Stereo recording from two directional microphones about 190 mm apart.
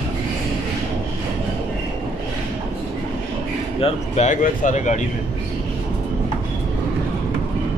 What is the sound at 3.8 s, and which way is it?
Speech, 40° left (ahead or behind).